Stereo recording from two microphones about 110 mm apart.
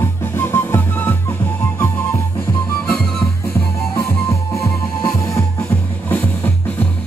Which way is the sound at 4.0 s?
25° left (ahead or behind).